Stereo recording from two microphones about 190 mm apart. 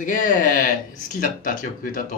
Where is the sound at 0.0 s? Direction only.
45° left (ahead or behind).